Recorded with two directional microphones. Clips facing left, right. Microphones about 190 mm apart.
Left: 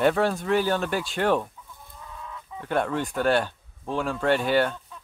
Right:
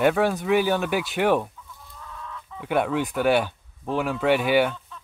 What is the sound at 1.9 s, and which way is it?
Chicken, 15° left (ahead or behind).